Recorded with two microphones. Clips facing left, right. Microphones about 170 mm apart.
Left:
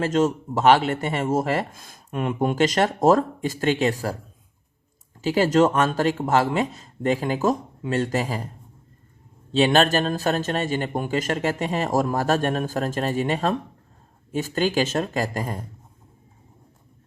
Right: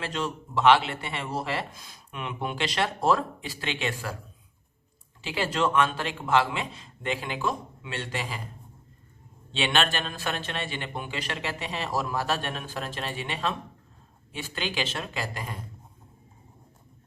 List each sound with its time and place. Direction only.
0.0 s speech: 45° left (ahead or behind)
5.2 s speech: 40° left (ahead or behind)
9.5 s speech: 40° left (ahead or behind)